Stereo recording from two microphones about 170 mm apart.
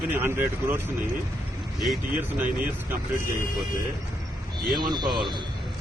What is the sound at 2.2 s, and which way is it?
Speech, 10° right (ahead or behind).